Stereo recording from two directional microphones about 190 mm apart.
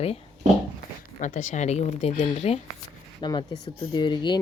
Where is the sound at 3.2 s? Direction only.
20° left (ahead or behind).